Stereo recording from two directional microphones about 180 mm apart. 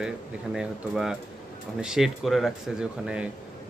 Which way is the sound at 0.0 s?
5° right (ahead or behind).